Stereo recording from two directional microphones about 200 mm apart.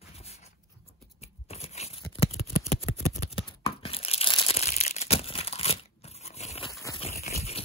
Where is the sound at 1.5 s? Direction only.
35° left (ahead or behind).